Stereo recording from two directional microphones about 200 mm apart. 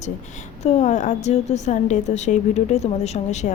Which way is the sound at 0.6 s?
35° left (ahead or behind).